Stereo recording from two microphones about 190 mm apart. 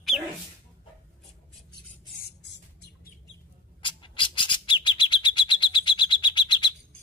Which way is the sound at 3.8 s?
25° left (ahead or behind).